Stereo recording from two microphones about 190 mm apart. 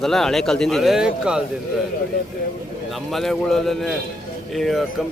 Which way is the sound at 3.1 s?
Centre (ahead or behind).